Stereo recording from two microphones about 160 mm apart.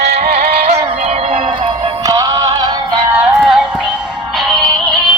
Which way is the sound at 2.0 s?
20° right (ahead or behind).